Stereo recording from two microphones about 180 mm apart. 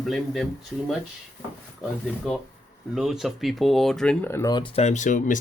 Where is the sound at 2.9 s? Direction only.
Centre (ahead or behind).